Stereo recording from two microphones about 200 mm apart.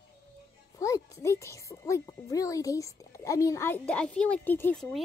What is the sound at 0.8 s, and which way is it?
A child's voice, 15° left (ahead or behind).